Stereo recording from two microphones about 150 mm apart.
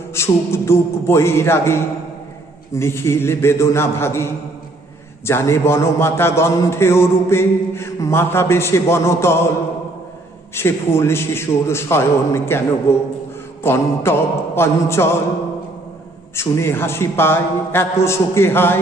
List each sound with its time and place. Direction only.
0.1 s a man's voice: 15° left (ahead or behind)
10.5 s a man's voice: 15° left (ahead or behind)
16.3 s a man's voice: 15° left (ahead or behind)